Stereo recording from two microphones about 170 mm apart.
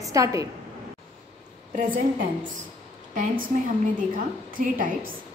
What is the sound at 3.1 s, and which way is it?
Speech, 50° right (ahead or behind).